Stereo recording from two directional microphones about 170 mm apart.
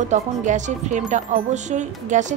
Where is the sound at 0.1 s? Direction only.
45° right (ahead or behind).